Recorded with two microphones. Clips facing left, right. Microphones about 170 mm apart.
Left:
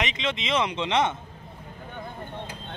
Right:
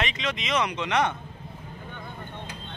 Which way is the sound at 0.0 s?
25° left (ahead or behind).